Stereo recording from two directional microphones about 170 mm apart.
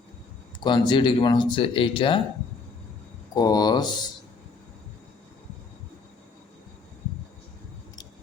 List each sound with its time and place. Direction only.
0.6 s speech: 30° left (ahead or behind)
3.3 s speech: 25° left (ahead or behind)